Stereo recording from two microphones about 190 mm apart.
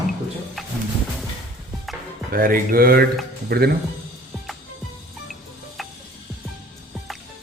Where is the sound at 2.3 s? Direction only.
50° right (ahead or behind).